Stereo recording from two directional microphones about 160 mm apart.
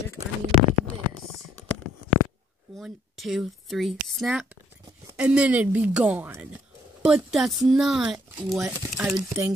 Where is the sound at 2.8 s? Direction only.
Centre (ahead or behind).